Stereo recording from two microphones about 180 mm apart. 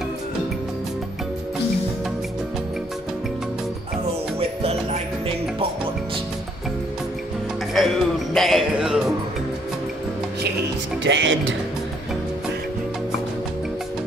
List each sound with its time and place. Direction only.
7.7 s music: centre (ahead or behind)
11.1 s speech: 90° right